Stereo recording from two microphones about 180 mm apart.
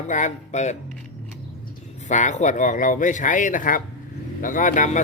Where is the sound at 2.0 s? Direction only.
40° left (ahead or behind).